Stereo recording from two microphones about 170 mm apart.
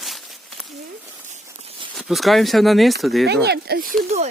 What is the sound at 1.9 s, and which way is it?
Speech, centre (ahead or behind).